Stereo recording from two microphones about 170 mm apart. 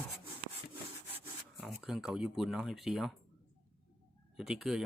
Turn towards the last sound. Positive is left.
turn(degrees=-5)  # may be behind; listen again after turning